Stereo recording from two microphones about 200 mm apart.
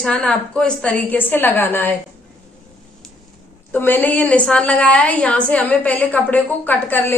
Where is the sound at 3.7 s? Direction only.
10° left (ahead or behind).